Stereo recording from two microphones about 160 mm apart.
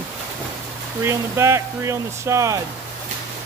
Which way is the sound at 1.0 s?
15° right (ahead or behind).